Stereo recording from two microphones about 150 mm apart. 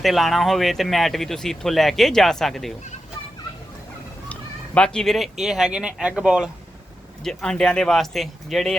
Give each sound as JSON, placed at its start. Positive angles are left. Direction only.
{"t": 0.0, "sound": "speech", "side_deg": 0}
{"t": 4.3, "sound": "speech", "side_deg": 5}